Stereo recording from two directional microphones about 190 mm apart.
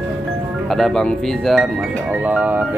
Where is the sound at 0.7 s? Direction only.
Centre (ahead or behind).